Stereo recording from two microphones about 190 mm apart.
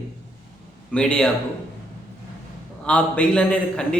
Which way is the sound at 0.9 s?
5° left (ahead or behind).